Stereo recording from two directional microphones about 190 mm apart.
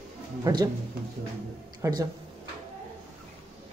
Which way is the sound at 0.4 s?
20° right (ahead or behind).